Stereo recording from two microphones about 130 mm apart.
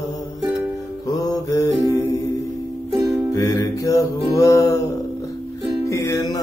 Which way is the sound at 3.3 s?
25° left (ahead or behind).